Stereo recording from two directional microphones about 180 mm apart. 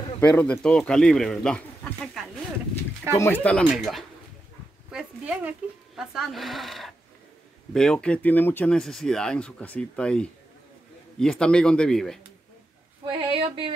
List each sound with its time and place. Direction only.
0.2 s a man's voice: 10° left (ahead or behind)
13.0 s speech: 30° right (ahead or behind)